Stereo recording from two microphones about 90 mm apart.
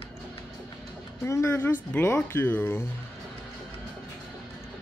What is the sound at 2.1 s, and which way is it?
Speech, 20° left (ahead or behind).